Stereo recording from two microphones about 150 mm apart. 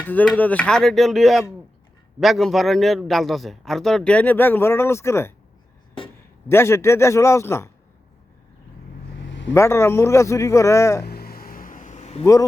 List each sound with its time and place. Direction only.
0.0 s a man's voice: 10° left (ahead or behind)
6.5 s a man's voice: 15° left (ahead or behind)
9.5 s a man's voice: 15° left (ahead or behind)
11.0 s a sound: 90° left; by 12.2 s 50° left (ahead or behind)
12.2 s a man's voice: 20° left (ahead or behind)